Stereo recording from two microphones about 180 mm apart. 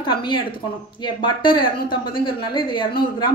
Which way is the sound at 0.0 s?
25° left (ahead or behind).